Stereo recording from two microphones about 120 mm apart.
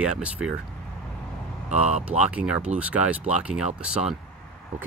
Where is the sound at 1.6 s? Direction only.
65° right (ahead or behind).